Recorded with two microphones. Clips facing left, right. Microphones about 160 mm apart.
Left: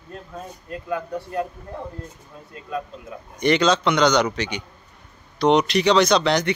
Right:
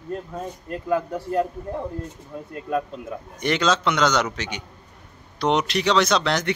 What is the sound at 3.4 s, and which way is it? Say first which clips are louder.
Speech: left 4 dB; centre (ahead or behind).